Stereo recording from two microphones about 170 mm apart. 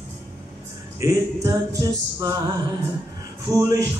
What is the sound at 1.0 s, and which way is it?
Mantra, 20° right (ahead or behind).